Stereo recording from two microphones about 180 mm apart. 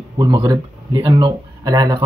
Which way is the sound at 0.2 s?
25° right (ahead or behind).